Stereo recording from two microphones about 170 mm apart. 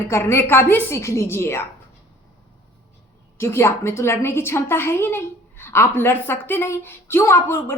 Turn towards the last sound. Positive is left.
turn(degrees=15)  # may be behind; listen again after turning